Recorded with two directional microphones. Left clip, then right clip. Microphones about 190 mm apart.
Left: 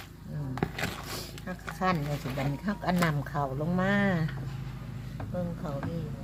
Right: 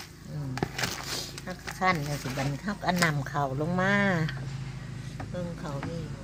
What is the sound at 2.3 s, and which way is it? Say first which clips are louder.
Speech: even; 5° right (ahead or behind).